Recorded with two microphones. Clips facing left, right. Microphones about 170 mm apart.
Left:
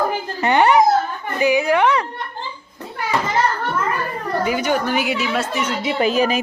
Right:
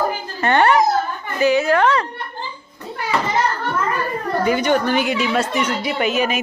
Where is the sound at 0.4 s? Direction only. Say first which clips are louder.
Left 1 dB; 15° left (ahead or behind).